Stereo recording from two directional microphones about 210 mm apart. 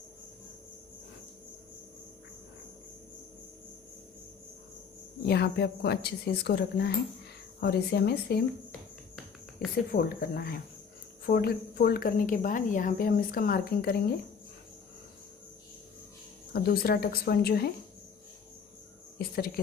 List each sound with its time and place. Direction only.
5.2 s speech: 50° left (ahead or behind)
9.9 s speech: 45° left (ahead or behind)
16.5 s speech: 45° left (ahead or behind)
19.1 s speech: 45° left (ahead or behind)